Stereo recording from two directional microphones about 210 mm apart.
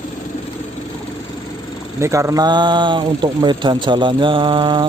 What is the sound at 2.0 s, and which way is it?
Speech, 15° right (ahead or behind).